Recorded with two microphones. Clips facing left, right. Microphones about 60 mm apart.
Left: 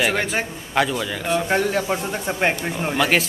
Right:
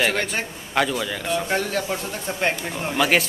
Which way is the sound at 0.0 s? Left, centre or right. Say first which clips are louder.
Left 2 dB; centre.